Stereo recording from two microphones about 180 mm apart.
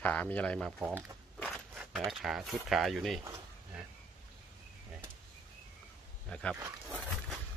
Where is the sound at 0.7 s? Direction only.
5° right (ahead or behind).